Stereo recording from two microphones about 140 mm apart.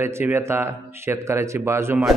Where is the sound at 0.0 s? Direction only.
15° right (ahead or behind).